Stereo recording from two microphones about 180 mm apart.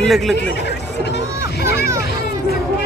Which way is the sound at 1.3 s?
15° right (ahead or behind).